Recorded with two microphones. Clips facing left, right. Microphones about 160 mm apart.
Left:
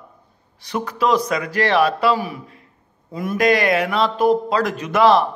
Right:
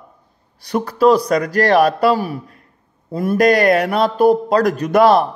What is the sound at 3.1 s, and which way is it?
A man's voice, 35° right (ahead or behind).